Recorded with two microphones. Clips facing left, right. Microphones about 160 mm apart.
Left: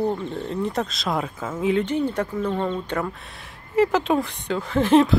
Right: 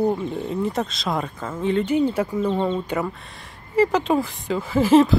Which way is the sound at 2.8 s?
5° right (ahead or behind).